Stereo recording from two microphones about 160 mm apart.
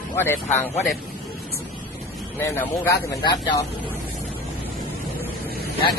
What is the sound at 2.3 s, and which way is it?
Speech, 15° left (ahead or behind).